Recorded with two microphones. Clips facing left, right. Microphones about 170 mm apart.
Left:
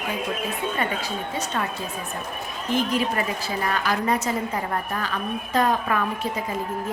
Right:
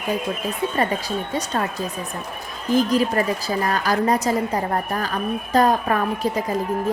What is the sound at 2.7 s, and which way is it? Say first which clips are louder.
A woman's voice: right 5 dB; 40° right (ahead or behind).